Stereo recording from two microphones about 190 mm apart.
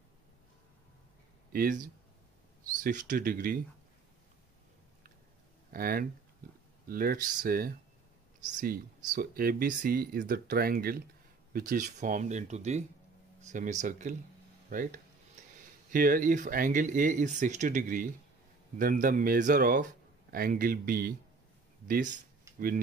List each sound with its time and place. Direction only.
1.5 s speech: 50° right (ahead or behind)
2.8 s speech: 40° right (ahead or behind)
5.7 s speech: 50° right (ahead or behind)
15.4 s a sound: 40° right (ahead or behind)
15.9 s speech: 45° right (ahead or behind)